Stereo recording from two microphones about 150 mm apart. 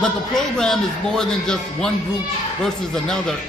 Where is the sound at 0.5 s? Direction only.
5° left (ahead or behind).